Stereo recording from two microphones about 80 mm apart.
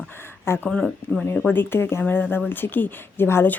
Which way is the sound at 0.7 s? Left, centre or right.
Centre.